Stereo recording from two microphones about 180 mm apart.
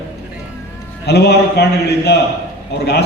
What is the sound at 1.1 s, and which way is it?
A man's voice, 65° left (ahead or behind).